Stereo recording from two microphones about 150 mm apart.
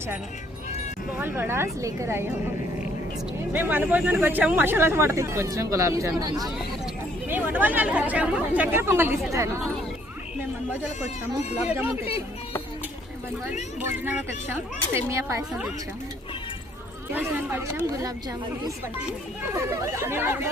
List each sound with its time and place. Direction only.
1.2 s speech: 15° right (ahead or behind)
3.5 s speech: 10° right (ahead or behind)
7.3 s speech: 10° right (ahead or behind)
13.8 s speech: 15° right (ahead or behind)
17.1 s speech: 10° right (ahead or behind)
19.5 s speech: 20° right (ahead or behind)